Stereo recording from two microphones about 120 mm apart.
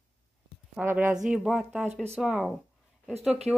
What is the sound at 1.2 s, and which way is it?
Speech, 5° right (ahead or behind).